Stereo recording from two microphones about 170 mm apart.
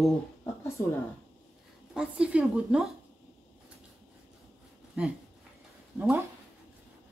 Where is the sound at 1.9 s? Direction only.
5° right (ahead or behind).